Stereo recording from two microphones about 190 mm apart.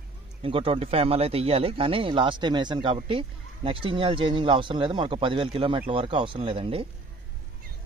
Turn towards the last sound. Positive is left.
turn(degrees=-30)  # may be behind; listen again after turning